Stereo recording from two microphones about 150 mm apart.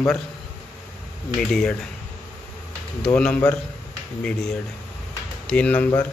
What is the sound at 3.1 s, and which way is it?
Speech, 5° left (ahead or behind).